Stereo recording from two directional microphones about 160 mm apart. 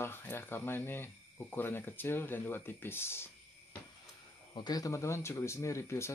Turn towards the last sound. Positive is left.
turn(degrees=15)  # may be behind; listen again after turning